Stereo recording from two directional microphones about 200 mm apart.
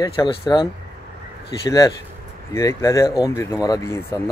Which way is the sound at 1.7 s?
15° left (ahead or behind).